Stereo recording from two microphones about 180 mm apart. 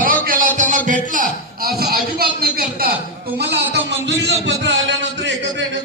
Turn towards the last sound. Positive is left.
turn(degrees=-80)